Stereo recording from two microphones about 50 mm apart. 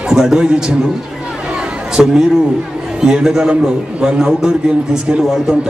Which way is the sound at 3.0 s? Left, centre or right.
Centre.